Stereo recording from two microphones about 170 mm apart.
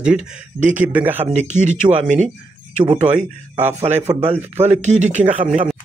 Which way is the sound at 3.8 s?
40° right (ahead or behind).